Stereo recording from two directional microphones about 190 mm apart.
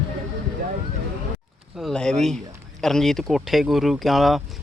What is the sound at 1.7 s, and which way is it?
Speech, centre (ahead or behind).